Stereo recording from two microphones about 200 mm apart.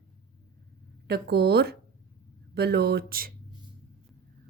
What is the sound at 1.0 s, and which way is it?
Speech, 55° right (ahead or behind).